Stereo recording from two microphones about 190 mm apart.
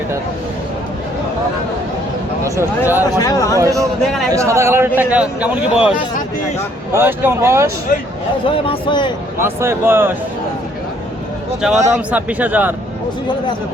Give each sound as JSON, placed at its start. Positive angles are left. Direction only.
{"t": 2.4, "sound": "a man's voice", "side_deg": -10}
{"t": 3.2, "sound": "speech", "side_deg": 20}
{"t": 3.6, "sound": "a man's voice", "side_deg": -15}
{"t": 8.4, "sound": "a man's voice", "side_deg": 30}
{"t": 9.4, "sound": "a man's voice", "side_deg": -15}
{"t": 11.8, "sound": "a man's voice", "side_deg": -10}